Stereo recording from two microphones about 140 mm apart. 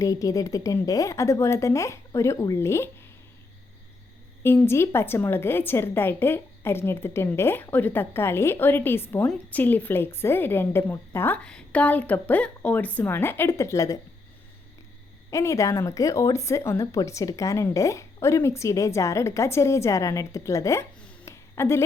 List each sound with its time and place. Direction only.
0.0 s a woman's voice: 25° left (ahead or behind)
4.4 s a woman's voice: 15° left (ahead or behind)
11.4 s a woman's voice: 10° left (ahead or behind)
15.3 s a woman's voice: 20° left (ahead or behind)
21.2 s a sound: 20° left (ahead or behind)